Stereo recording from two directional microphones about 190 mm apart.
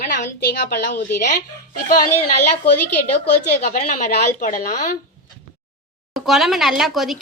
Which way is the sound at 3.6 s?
40° left (ahead or behind).